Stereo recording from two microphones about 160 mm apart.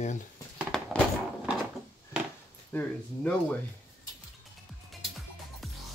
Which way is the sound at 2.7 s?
10° left (ahead or behind).